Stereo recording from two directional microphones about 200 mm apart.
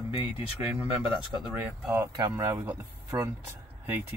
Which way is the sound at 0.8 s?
5° right (ahead or behind).